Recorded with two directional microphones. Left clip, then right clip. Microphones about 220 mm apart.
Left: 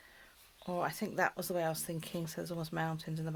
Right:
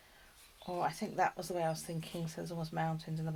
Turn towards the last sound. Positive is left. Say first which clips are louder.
# even
turn(degrees=40)  # may be behind; listen again after turning